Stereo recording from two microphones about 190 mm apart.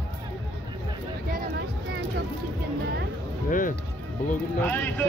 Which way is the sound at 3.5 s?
45° left (ahead or behind).